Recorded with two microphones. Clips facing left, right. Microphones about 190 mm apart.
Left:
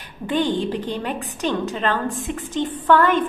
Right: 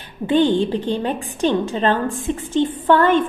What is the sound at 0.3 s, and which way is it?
A woman's voice, 25° right (ahead or behind).